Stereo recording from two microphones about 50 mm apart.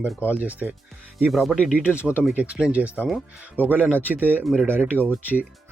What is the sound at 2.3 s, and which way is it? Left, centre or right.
Speech, right.